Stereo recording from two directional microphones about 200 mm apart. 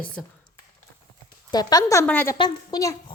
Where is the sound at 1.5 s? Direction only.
20° left (ahead or behind).